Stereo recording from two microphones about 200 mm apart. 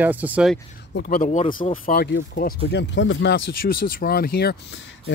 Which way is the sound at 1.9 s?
55° left (ahead or behind).